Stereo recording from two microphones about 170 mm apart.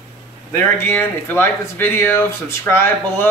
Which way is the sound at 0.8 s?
10° left (ahead or behind).